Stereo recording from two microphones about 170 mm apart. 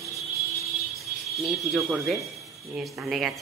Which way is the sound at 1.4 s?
Centre (ahead or behind).